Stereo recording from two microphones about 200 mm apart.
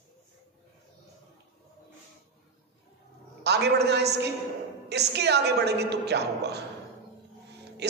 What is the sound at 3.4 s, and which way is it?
A woman's voice, 55° right (ahead or behind).